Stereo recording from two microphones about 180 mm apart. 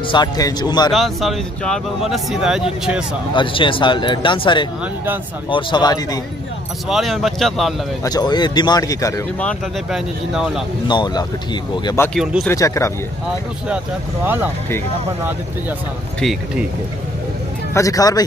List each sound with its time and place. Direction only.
0.1 s speech: 20° left (ahead or behind)
0.9 s speech: centre (ahead or behind)
3.3 s speech: 30° left (ahead or behind)
6.9 s speech: centre (ahead or behind)
8.0 s speech: 20° left (ahead or behind)
9.4 s speech: 5° left (ahead or behind)
10.9 s speech: 25° left (ahead or behind)
12.2 s speech: centre (ahead or behind)
12.4 s speech: 15° left (ahead or behind)
14.2 s speech: 10° right (ahead or behind)
16.2 s speech: centre (ahead or behind)
17.7 s speech: 20° left (ahead or behind)